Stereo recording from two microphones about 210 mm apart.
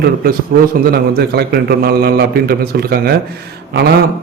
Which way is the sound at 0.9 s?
50° right (ahead or behind).